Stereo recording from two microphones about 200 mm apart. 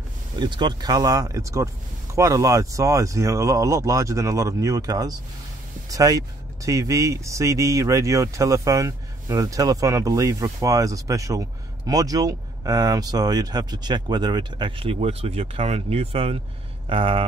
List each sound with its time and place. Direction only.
0.4 s speech: 20° right (ahead or behind)